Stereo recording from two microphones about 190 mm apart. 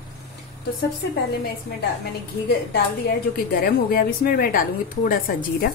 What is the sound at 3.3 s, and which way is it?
A woman's voice, 50° left (ahead or behind).